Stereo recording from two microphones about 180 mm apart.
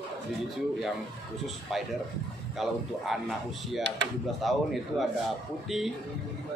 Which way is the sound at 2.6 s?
Centre (ahead or behind).